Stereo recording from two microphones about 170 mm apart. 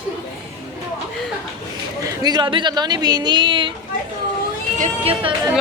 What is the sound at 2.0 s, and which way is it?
Speech, 25° right (ahead or behind).